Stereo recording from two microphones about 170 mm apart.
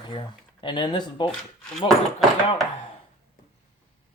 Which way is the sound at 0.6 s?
30° left (ahead or behind).